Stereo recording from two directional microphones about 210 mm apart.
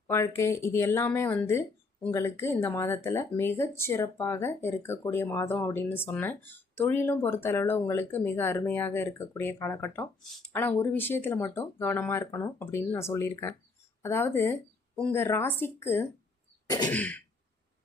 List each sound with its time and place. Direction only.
0.1 s speech: 15° left (ahead or behind)
16.6 s throat clearing: 20° left (ahead or behind)
16.9 s speech: 5° left (ahead or behind)